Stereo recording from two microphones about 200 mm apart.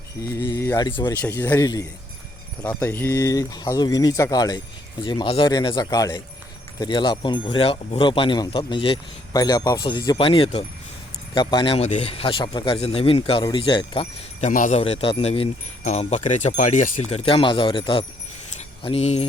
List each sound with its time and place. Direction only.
0.2 s speech: 15° left (ahead or behind)
0.9 s speech: 25° left (ahead or behind)
1.1 s speech: 10° left (ahead or behind); by 14.5 s 25° left (ahead or behind)
14.5 s speech: 40° left (ahead or behind)
17.2 s speech: 25° left (ahead or behind)